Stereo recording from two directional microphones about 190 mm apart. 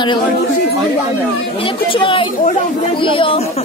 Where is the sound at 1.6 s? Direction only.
25° left (ahead or behind).